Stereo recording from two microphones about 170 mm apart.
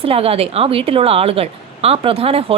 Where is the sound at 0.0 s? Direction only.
35° right (ahead or behind).